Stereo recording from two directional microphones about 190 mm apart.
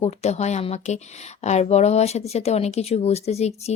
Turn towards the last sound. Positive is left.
turn(degrees=35)  # may be behind; listen again after turning